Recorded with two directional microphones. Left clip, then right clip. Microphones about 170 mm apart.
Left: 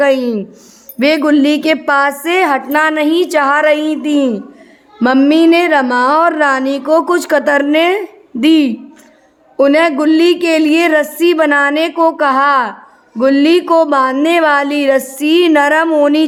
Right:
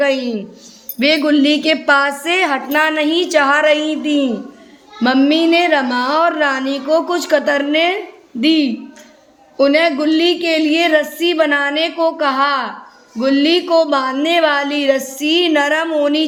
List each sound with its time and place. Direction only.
0.0 s a woman's voice: 40° left (ahead or behind)